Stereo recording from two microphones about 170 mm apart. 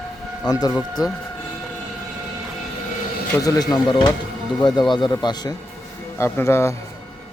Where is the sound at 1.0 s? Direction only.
25° left (ahead or behind).